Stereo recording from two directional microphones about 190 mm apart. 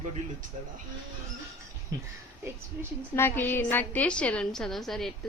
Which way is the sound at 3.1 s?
10° left (ahead or behind).